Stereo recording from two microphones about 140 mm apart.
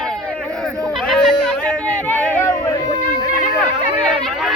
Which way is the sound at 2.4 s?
20° left (ahead or behind).